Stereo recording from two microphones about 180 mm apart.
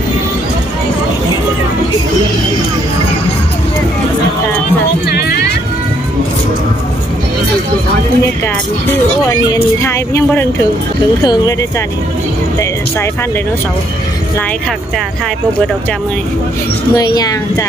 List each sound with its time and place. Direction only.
5.0 s music: 60° left (ahead or behind)
9.3 s speech: 15° left (ahead or behind)
16.9 s a child's voice: 20° left (ahead or behind)